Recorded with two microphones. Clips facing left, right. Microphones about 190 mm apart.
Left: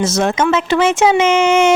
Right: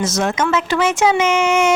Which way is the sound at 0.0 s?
30° left (ahead or behind).